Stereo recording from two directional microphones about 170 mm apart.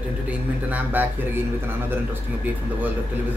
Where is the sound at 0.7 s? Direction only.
10° right (ahead or behind).